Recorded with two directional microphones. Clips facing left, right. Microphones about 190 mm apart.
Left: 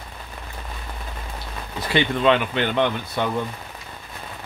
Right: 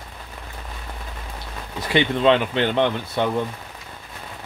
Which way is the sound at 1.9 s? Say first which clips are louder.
Right 1 dB; 25° right (ahead or behind).